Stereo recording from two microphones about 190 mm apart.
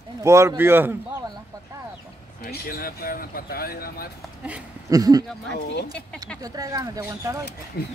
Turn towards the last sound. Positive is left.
turn(degrees=55)  # may be behind; listen again after turning